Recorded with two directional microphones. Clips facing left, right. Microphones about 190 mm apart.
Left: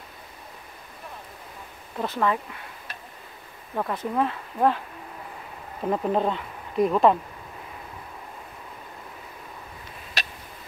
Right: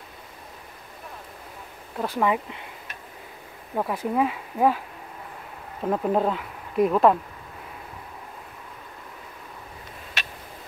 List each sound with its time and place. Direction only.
2.0 s speech: 10° right (ahead or behind)
3.7 s speech: 10° right (ahead or behind)
10.2 s a sound: 35° left (ahead or behind)